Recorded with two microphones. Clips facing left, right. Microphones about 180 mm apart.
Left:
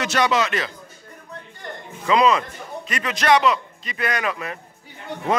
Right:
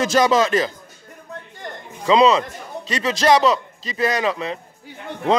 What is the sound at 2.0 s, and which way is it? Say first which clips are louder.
A man's voice: right 3 dB; 25° right (ahead or behind).